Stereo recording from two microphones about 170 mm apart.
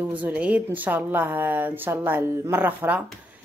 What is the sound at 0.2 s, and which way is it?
A woman's voice, 5° right (ahead or behind).